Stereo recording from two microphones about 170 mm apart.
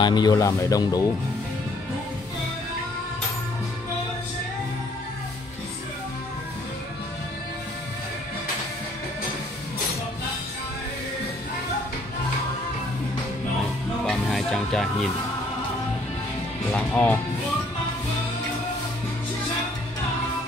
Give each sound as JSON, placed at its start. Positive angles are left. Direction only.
{"t": 0.0, "sound": "speech", "side_deg": 25}
{"t": 14.0, "sound": "music", "side_deg": 5}
{"t": 16.7, "sound": "music", "side_deg": 10}